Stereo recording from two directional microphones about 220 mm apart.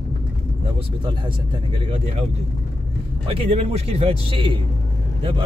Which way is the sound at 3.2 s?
25° right (ahead or behind).